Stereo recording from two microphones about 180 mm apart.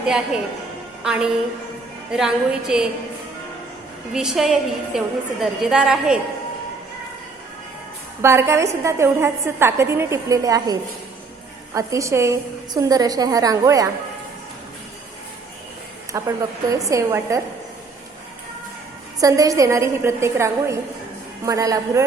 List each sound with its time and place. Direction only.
1.0 s a woman's voice: 5° right (ahead or behind)
4.1 s a woman's voice: 5° right (ahead or behind)
8.2 s a woman's voice: 15° right (ahead or behind)
16.1 s a woman's voice: 20° right (ahead or behind)
19.2 s a woman's voice: 20° right (ahead or behind)